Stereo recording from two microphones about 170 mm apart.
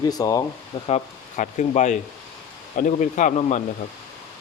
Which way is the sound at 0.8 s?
45° left (ahead or behind).